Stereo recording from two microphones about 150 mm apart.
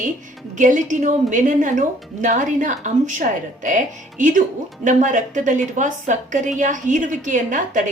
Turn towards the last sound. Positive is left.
turn(degrees=-60)  # may be behind; listen again after turning